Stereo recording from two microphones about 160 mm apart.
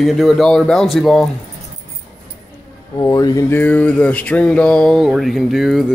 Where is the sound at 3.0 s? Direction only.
20° left (ahead or behind).